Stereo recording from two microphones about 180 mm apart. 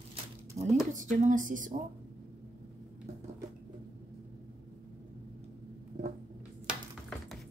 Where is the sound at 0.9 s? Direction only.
45° right (ahead or behind).